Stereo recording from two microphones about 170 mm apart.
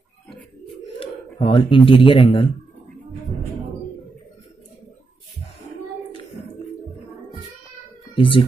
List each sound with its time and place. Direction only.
0.9 s speech: 30° left (ahead or behind)
8.2 s speech: 30° left (ahead or behind)